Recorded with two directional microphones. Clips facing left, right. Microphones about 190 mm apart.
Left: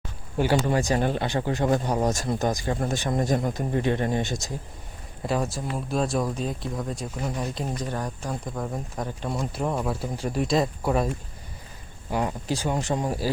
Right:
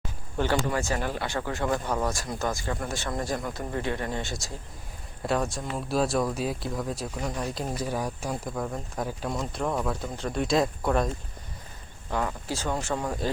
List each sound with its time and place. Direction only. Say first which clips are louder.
0.3 s speech: left 4 dB; 10° left (ahead or behind)
5.2 s speech: left 1 dB; centre (ahead or behind)
8.5 s speech: left 1 dB; 5° left (ahead or behind)
12.1 s speech: left 3 dB; 15° left (ahead or behind)